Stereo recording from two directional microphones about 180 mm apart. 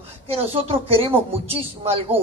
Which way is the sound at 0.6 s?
30° right (ahead or behind).